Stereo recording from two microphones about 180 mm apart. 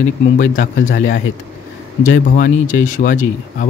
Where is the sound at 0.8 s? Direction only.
90° left.